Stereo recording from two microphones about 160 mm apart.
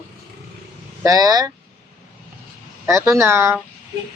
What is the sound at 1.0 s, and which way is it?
Speech, 20° right (ahead or behind).